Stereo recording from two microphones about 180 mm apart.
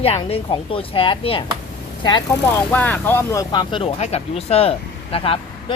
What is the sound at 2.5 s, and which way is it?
Speech, 10° left (ahead or behind).